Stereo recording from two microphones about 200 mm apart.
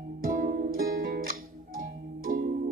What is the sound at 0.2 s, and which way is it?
Music, 45° right (ahead or behind).